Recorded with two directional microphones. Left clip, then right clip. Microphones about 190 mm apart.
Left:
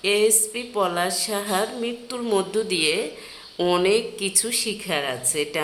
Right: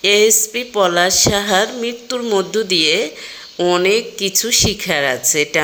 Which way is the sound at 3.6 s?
5° right (ahead or behind).